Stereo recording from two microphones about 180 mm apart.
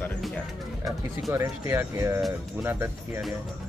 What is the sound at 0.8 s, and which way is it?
Speech, 15° right (ahead or behind).